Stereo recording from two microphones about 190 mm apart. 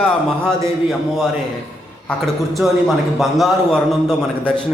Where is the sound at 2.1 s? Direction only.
Centre (ahead or behind).